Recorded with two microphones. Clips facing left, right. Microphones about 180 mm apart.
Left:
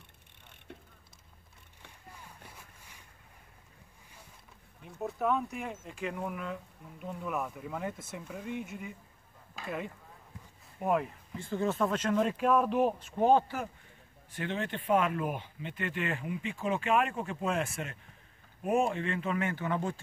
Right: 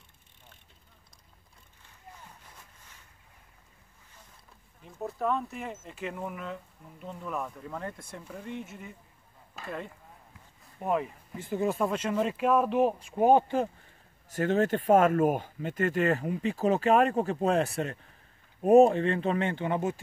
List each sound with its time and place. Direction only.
2.5 s a sound: 10° left (ahead or behind)
4.8 s speech: centre (ahead or behind)
9.6 s a sound: 5° left (ahead or behind)
10.8 s speech: centre (ahead or behind)
11.3 s speech: 15° right (ahead or behind)
14.3 s speech: 45° right (ahead or behind); by 20.0 s 20° right (ahead or behind)